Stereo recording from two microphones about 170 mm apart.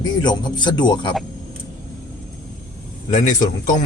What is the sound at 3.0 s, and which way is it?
Speech, 50° left (ahead or behind).